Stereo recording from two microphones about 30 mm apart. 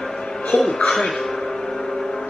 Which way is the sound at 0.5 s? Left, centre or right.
Left.